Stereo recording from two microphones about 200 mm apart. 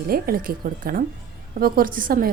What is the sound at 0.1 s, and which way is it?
A woman's voice, 45° right (ahead or behind).